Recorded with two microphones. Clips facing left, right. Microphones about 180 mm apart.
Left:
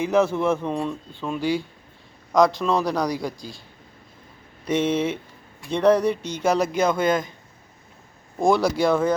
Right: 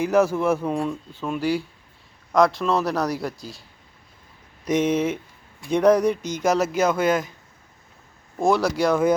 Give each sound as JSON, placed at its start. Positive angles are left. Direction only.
{"t": 0.3, "sound": "speech", "side_deg": -5}
{"t": 1.4, "sound": "speech", "side_deg": -35}
{"t": 2.3, "sound": "speech", "side_deg": 0}
{"t": 4.6, "sound": "speech", "side_deg": -10}
{"t": 8.4, "sound": "speech", "side_deg": 0}